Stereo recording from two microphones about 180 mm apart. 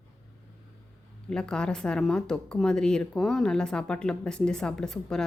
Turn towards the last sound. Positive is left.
turn(degrees=5)  # may be behind; listen again after turning